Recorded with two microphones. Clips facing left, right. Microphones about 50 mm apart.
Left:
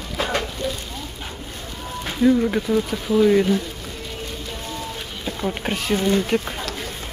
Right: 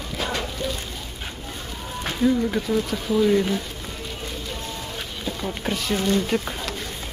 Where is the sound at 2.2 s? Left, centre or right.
Centre.